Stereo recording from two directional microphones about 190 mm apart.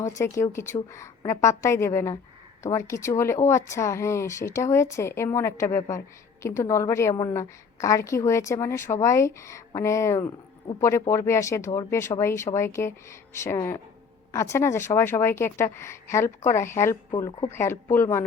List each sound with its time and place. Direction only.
0.2 s a woman's voice: 15° left (ahead or behind)